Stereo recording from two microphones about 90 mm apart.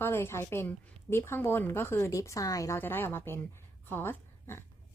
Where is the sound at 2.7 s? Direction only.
25° left (ahead or behind).